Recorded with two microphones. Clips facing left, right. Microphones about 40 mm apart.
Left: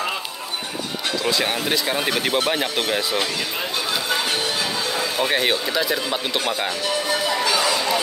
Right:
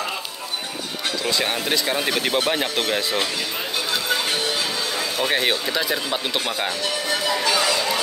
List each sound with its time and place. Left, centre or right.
1.2 s speech: centre
4.9 s speech: centre
7.2 s music: centre